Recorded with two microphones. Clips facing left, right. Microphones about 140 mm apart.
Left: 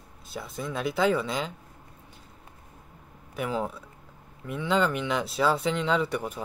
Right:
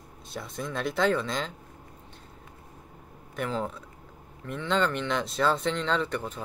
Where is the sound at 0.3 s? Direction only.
5° left (ahead or behind).